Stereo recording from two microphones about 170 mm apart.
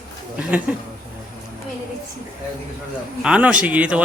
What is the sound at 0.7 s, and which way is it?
Speech, 10° right (ahead or behind).